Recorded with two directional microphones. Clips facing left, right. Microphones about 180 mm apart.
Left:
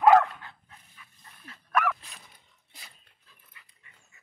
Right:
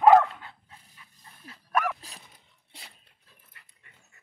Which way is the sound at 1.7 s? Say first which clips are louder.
Even; 35° right (ahead or behind).